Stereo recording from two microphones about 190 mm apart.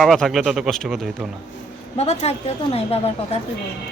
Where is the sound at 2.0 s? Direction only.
35° left (ahead or behind).